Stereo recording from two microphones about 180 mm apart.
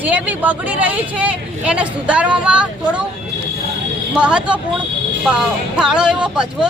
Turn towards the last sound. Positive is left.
turn(degrees=-5)  # may be behind; listen again after turning